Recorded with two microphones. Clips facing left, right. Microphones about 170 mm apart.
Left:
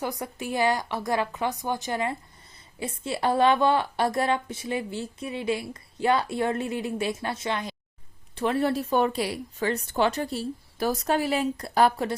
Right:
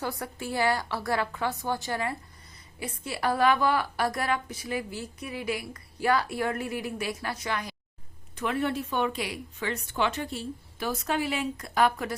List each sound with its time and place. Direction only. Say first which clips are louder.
0.0 s a woman's voice: left 2 dB; 20° left (ahead or behind)
8.4 s speech: left 4 dB; 35° left (ahead or behind)